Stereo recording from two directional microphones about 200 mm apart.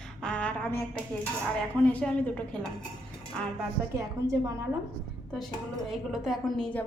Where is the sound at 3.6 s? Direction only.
15° right (ahead or behind).